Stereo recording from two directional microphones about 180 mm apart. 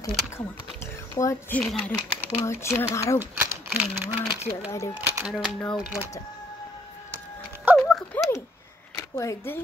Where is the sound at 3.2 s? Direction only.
10° right (ahead or behind).